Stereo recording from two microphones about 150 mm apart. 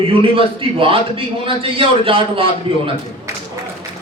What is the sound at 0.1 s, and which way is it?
A man's voice, 35° right (ahead or behind).